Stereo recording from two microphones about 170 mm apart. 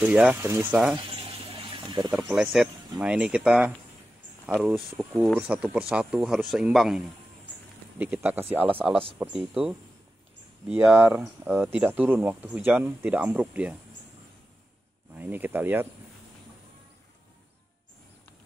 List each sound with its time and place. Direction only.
0.0 s speech: 10° right (ahead or behind)
0.9 s water: 30° right (ahead or behind)
2.2 s speech: 10° right (ahead or behind)
10.8 s speech: 10° right (ahead or behind)
15.1 s speech: 10° right (ahead or behind)